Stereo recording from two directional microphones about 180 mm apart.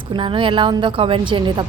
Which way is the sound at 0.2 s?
30° right (ahead or behind).